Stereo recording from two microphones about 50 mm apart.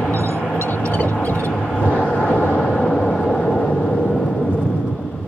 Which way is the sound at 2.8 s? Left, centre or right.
Centre.